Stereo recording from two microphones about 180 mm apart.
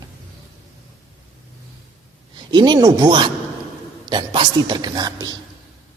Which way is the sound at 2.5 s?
25° right (ahead or behind).